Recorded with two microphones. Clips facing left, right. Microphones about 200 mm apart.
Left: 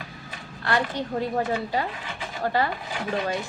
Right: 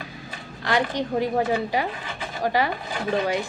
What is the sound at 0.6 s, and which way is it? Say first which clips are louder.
A woman's voice: right 2 dB; 15° right (ahead or behind).